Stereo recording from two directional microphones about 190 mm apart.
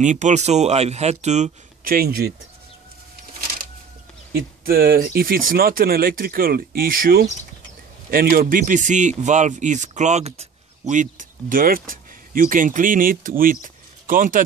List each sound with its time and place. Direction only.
0.0 s speech: 40° right (ahead or behind)
2.0 s speech: 55° right (ahead or behind)
4.3 s a man's voice: 50° right (ahead or behind)